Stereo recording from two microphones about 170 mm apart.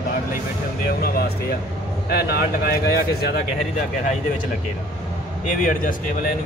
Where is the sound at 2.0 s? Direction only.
65° left (ahead or behind).